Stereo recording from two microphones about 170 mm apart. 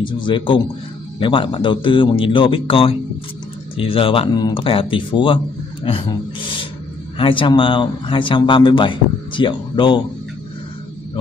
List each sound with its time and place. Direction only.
0.0 s speech: 30° left (ahead or behind)
7.2 s speech: 30° left (ahead or behind)